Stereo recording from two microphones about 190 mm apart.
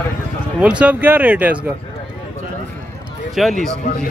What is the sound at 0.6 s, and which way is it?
Speech, 5° right (ahead or behind).